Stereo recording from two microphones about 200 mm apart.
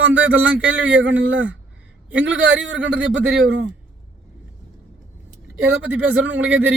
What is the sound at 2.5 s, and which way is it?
A man's voice, 70° right (ahead or behind).